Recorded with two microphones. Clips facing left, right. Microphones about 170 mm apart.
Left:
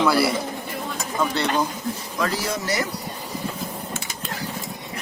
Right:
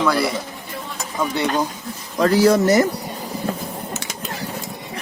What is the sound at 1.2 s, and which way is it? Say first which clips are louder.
Speech: right 2 dB; 15° right (ahead or behind).